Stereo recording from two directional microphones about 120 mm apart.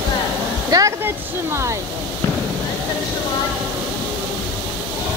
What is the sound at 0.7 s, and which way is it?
Speech, 25° right (ahead or behind).